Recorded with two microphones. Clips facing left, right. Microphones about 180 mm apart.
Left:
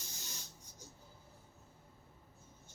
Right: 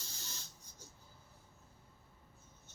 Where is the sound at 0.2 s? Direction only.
15° left (ahead or behind).